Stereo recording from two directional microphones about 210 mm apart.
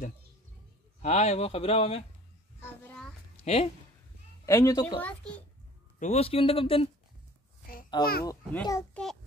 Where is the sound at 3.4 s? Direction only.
30° left (ahead or behind).